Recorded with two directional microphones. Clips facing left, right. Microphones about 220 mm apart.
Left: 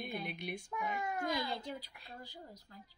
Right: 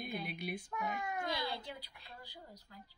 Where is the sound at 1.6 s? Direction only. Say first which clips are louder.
Left 4 dB; 45° left (ahead or behind).